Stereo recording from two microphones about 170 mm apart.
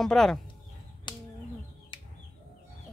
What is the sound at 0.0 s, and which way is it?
Speech, centre (ahead or behind).